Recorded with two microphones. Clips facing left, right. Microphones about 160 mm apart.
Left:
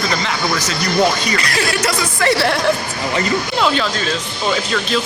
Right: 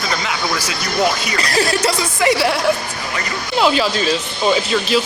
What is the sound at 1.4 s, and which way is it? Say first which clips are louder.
Speech: right 2 dB; 35° right (ahead or behind).